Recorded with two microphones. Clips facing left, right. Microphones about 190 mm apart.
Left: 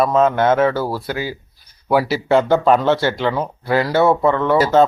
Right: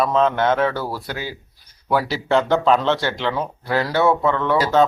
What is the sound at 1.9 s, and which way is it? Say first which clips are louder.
Speech: left 4 dB; 5° left (ahead or behind).